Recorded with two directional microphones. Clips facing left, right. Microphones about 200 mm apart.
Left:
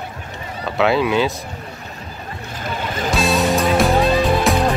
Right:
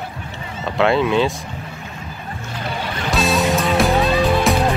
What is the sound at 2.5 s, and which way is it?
Boat, 45° left (ahead or behind).